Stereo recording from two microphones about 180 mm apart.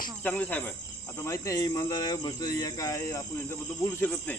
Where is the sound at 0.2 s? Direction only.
10° left (ahead or behind).